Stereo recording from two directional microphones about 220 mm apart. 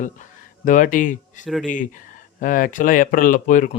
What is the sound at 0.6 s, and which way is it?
Speech, 35° left (ahead or behind).